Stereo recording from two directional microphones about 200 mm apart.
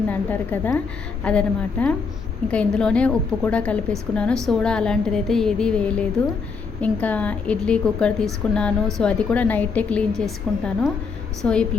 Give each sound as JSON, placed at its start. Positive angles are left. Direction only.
{"t": 0.1, "sound": "a woman's voice", "side_deg": 10}